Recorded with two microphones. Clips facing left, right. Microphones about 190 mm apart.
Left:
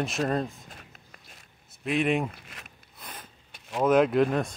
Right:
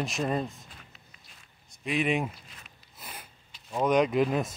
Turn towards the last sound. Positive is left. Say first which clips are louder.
# left 2 dB
turn(degrees=0)  # may be behind; listen again after turning